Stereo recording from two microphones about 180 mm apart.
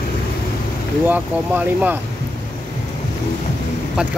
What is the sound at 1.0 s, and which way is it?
Speech, 10° right (ahead or behind).